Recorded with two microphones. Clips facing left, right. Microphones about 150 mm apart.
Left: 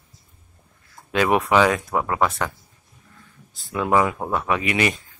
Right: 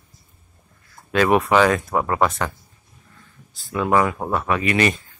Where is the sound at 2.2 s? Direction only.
10° right (ahead or behind).